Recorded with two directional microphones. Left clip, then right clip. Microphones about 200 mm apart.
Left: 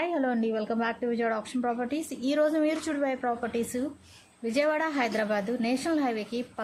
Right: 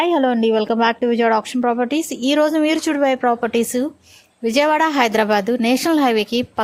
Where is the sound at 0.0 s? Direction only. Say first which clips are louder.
Right 12 dB; 40° right (ahead or behind).